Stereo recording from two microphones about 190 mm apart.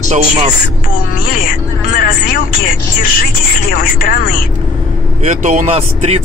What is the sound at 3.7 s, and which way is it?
Speech, 50° left (ahead or behind).